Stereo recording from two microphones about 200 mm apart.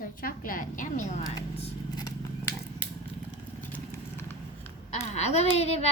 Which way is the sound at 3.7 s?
10° left (ahead or behind).